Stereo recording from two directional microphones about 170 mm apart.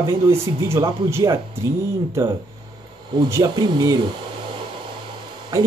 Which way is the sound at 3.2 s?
20° right (ahead or behind).